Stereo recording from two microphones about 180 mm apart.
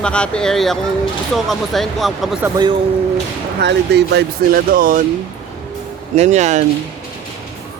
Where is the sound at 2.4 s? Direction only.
25° right (ahead or behind).